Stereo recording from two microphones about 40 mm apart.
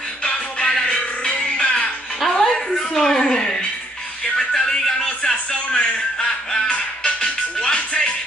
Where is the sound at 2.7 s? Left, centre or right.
Centre.